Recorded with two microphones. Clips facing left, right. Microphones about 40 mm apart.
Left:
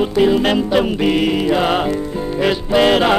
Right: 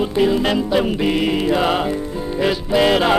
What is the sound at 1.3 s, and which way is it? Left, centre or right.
Music, centre.